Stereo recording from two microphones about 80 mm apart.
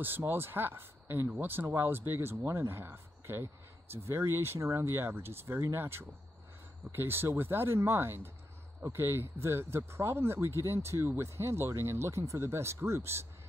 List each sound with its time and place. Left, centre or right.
0.3 s speech: right